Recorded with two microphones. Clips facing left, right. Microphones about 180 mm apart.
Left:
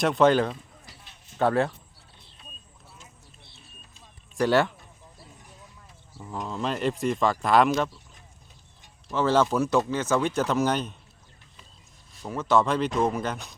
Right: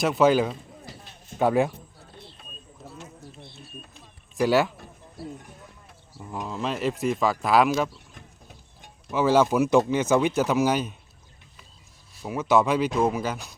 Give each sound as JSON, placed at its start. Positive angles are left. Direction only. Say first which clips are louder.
{"t": 0.0, "sound": "speech", "louder": "even", "side_deg": -5}
{"t": 2.0, "sound": "vehicle", "louder": "right 11 dB", "side_deg": -65}
{"t": 3.0, "sound": "a sound", "louder": "right 11 dB", "side_deg": -55}
{"t": 4.4, "sound": "speech", "louder": "right 1 dB", "side_deg": -5}
{"t": 4.8, "sound": "a sound", "louder": "right 11 dB", "side_deg": -70}
{"t": 6.3, "sound": "speech", "louder": "even", "side_deg": -5}
{"t": 9.0, "sound": "speech", "louder": "right 2 dB", "side_deg": -10}
{"t": 12.2, "sound": "speech", "louder": "right 2 dB", "side_deg": -10}